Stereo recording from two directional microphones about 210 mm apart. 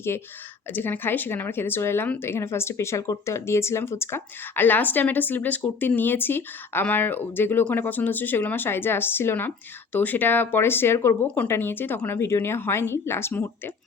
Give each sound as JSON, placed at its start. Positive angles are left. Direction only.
{"t": 0.7, "sound": "speech", "side_deg": 10}